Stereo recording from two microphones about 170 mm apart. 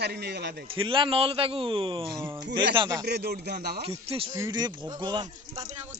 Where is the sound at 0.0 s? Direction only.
75° right (ahead or behind).